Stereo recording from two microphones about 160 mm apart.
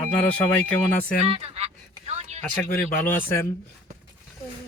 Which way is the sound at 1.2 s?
40° right (ahead or behind).